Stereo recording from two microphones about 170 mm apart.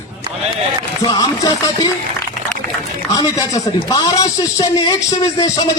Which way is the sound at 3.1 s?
20° left (ahead or behind).